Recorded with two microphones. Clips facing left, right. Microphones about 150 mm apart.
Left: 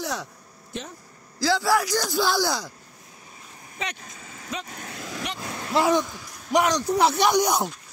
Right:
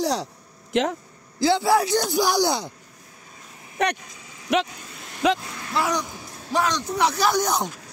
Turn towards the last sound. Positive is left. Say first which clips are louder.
# left 1 dB
turn(degrees=10)  # may be behind; listen again after turning